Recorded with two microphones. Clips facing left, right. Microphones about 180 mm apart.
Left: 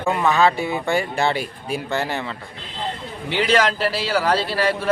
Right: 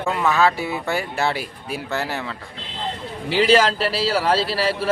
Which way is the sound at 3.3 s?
30° right (ahead or behind).